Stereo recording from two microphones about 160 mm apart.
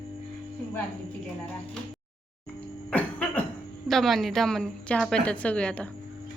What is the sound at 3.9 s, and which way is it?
A woman's voice, centre (ahead or behind).